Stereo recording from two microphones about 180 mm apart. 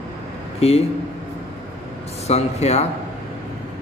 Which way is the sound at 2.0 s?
35° left (ahead or behind).